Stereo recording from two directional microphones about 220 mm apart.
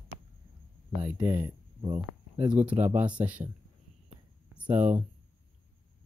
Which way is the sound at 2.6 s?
10° right (ahead or behind).